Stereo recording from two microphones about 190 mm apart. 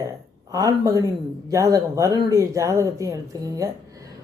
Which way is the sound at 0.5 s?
20° right (ahead or behind).